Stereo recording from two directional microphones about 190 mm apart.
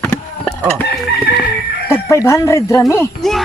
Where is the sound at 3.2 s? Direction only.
Centre (ahead or behind).